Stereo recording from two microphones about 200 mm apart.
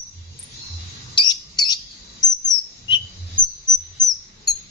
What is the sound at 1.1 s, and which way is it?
Bird, 20° left (ahead or behind).